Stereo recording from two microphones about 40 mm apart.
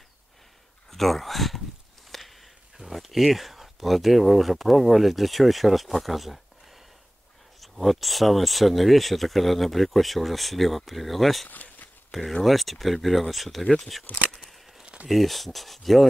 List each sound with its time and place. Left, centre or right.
0.8 s speech: centre
2.0 s a sound: centre
2.8 s speech: centre
7.6 s speech: centre
11.4 s a sound: left
12.1 s speech: centre
15.0 s speech: centre